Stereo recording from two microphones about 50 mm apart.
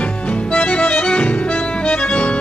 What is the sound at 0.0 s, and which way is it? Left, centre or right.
Music, left.